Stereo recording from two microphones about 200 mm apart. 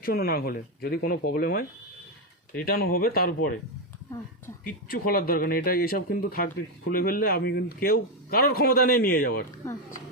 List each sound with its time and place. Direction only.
0.0 s speech: 50° left (ahead or behind)
2.6 s speech: 50° left (ahead or behind)
4.6 s speech: 45° left (ahead or behind)